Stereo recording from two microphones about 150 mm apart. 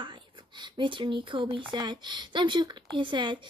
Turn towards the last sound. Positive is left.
turn(degrees=-30)  # may be behind; listen again after turning